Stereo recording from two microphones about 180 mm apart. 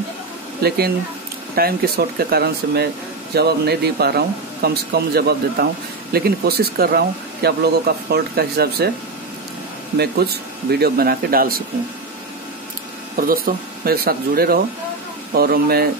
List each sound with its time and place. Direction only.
0.6 s speech: 60° right (ahead or behind)
9.9 s speech: 60° right (ahead or behind)
13.1 s speech: 55° right (ahead or behind)